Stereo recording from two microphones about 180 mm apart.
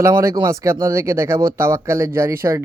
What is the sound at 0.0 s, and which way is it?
Speech, 15° right (ahead or behind).